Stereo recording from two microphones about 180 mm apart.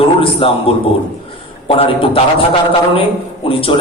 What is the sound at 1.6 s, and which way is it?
Speech, 30° left (ahead or behind).